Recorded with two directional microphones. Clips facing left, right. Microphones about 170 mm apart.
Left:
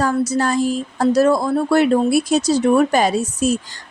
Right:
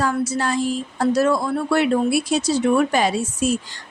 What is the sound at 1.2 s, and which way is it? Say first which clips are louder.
Speech: left 5 dB; 40° left (ahead or behind).